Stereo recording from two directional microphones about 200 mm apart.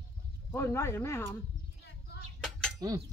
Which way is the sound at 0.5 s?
10° left (ahead or behind).